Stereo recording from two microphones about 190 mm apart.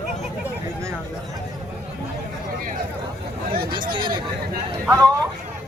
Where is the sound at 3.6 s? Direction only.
50° right (ahead or behind).